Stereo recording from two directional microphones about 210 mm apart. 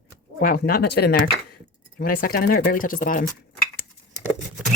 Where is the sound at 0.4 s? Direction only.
45° left (ahead or behind).